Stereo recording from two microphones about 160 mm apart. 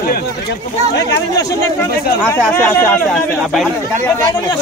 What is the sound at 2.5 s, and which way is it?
Speech, 10° left (ahead or behind).